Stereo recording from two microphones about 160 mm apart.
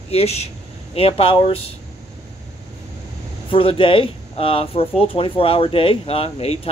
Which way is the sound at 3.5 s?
35° left (ahead or behind).